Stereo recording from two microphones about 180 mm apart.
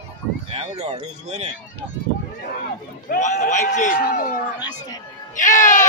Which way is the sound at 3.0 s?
40° left (ahead or behind).